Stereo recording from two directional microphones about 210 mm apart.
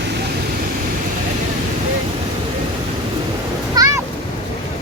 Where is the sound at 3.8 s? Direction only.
15° right (ahead or behind).